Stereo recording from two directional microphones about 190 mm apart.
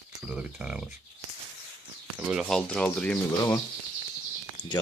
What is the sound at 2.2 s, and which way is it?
Speech, 5° right (ahead or behind).